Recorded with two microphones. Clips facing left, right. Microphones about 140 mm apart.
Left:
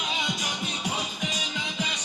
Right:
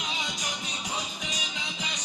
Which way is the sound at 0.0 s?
55° left (ahead or behind).